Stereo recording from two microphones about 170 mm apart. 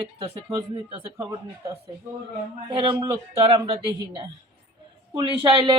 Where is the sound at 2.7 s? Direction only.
30° right (ahead or behind).